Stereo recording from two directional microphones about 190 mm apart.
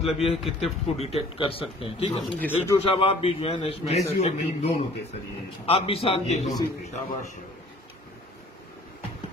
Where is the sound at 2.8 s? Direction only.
30° left (ahead or behind).